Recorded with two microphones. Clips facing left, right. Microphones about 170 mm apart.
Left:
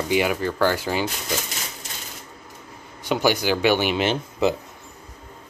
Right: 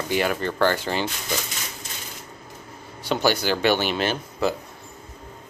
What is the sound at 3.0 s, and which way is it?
Speech, 15° left (ahead or behind).